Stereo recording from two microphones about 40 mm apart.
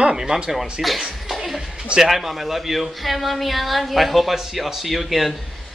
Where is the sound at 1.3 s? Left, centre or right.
Centre.